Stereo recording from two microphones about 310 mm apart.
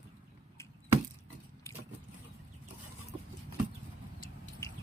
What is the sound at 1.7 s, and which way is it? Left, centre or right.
Vehicle, centre.